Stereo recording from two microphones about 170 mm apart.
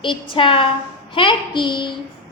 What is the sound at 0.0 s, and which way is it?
A woman's voice, 30° left (ahead or behind).